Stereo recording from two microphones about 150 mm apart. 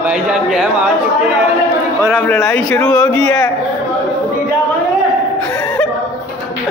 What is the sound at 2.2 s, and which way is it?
Speech, 10° left (ahead or behind).